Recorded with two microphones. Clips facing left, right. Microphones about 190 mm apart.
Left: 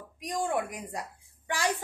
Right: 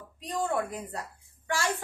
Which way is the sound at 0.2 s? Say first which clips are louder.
Even; 15° left (ahead or behind).